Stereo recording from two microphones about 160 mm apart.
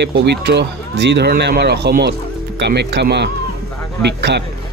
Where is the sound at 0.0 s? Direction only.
90° right.